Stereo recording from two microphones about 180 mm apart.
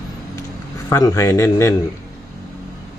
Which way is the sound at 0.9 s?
20° left (ahead or behind).